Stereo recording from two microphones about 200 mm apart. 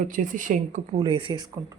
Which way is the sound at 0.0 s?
40° right (ahead or behind).